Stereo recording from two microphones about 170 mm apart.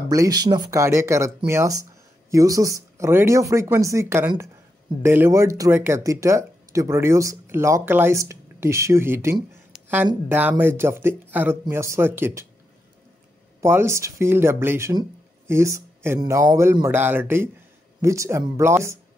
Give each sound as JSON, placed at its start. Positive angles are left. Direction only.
{"t": 0.1, "sound": "speech", "side_deg": -20}
{"t": 9.7, "sound": "a sound", "side_deg": -10}
{"t": 10.2, "sound": "speech", "side_deg": -10}
{"t": 13.6, "sound": "speech", "side_deg": -15}